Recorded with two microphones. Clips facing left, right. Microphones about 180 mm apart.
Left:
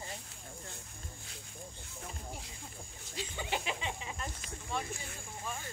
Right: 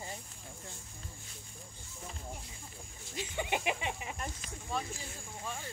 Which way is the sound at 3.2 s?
20° right (ahead or behind).